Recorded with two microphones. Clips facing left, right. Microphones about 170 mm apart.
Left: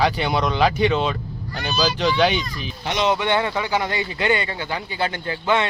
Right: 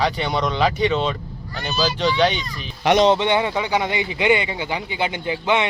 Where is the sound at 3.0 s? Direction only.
25° right (ahead or behind).